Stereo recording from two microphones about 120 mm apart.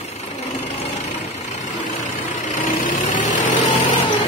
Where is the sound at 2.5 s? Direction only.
90° left.